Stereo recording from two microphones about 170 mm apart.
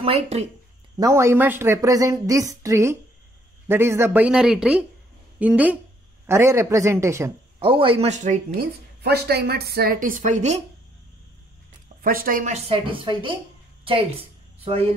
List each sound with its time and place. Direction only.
0.0 s a woman's voice: 35° right (ahead or behind)
0.9 s a woman's voice: 20° right (ahead or behind)
7.5 s a woman's voice: 30° right (ahead or behind); by 8.6 s 45° right (ahead or behind)
9.0 s a woman's voice: 70° right (ahead or behind); by 10.6 s 45° right (ahead or behind)
12.0 s a woman's voice: 55° right (ahead or behind); by 13.4 s 30° right (ahead or behind)
14.6 s speech: 35° right (ahead or behind)